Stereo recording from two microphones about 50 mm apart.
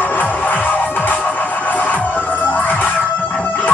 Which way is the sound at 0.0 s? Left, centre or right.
Left.